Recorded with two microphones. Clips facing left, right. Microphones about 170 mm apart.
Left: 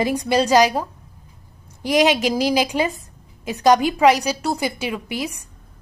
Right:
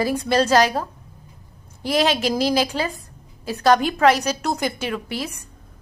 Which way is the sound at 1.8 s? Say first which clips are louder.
Left 3 dB; 15° left (ahead or behind).